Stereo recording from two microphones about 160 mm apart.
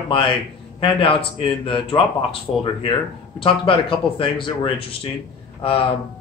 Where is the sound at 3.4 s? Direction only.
35° left (ahead or behind).